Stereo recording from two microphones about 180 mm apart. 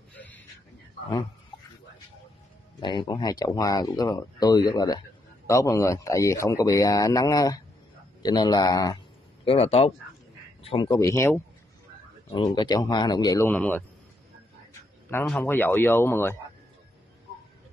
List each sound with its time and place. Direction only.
0.1 s a sound: 10° left (ahead or behind)
2.8 s speech: 25° left (ahead or behind)
9.4 s speech: 30° left (ahead or behind)
10.9 s speech: 15° left (ahead or behind)
15.2 s speech: 10° left (ahead or behind)